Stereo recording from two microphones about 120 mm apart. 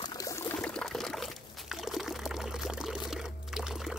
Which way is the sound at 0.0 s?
25° left (ahead or behind).